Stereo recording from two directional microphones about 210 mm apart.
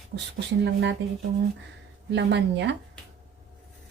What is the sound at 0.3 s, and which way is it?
Speech, 55° right (ahead or behind).